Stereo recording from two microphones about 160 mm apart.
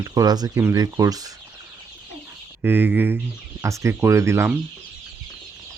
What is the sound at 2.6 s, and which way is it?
Speech, 15° right (ahead or behind).